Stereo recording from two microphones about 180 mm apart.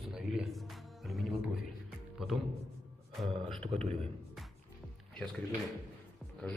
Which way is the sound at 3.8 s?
Centre (ahead or behind).